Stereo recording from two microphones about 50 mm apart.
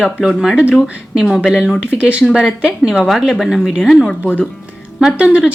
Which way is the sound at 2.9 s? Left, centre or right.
Centre.